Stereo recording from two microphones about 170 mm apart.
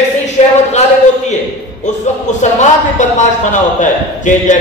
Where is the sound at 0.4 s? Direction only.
40° left (ahead or behind).